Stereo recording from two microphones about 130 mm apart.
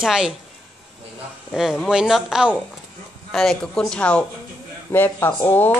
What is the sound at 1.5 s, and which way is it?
A man's voice, centre (ahead or behind).